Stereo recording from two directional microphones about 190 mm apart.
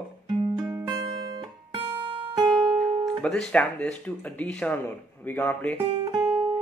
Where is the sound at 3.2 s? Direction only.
5° left (ahead or behind).